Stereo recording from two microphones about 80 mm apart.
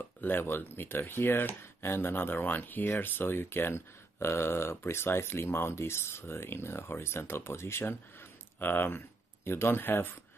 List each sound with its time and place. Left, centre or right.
0.2 s speech: left